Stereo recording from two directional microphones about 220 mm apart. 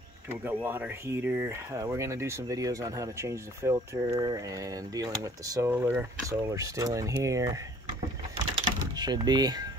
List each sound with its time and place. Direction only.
0.5 s speech: 10° right (ahead or behind)
8.9 s speech: 20° right (ahead or behind)